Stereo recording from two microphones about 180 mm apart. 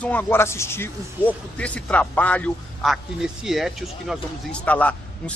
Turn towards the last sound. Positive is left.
turn(degrees=10)  # may be behind; listen again after turning